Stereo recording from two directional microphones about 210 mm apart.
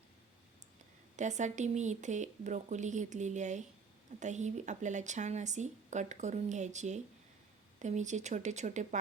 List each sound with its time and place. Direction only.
1.1 s speech: 35° right (ahead or behind)